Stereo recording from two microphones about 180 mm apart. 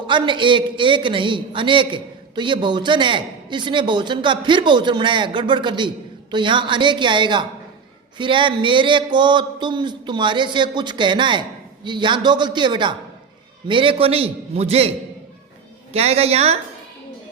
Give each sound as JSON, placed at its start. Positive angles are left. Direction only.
{"t": 0.1, "sound": "a man's voice", "side_deg": -25}